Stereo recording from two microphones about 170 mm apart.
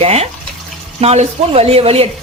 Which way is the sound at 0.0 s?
40° right (ahead or behind).